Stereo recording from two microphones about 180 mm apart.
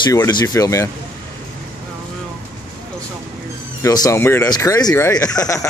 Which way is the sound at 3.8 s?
20° left (ahead or behind).